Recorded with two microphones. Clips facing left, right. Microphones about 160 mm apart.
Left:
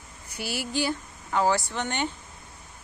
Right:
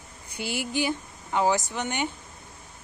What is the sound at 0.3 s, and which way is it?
Speech, 20° right (ahead or behind).